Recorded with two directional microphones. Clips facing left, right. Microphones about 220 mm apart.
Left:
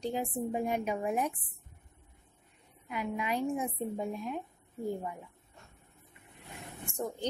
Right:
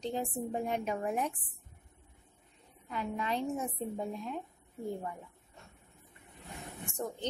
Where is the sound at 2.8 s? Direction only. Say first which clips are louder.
Left 1 dB; 10° left (ahead or behind).